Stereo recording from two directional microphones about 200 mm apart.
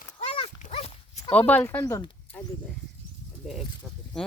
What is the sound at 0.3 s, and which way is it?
Dog, 30° left (ahead or behind).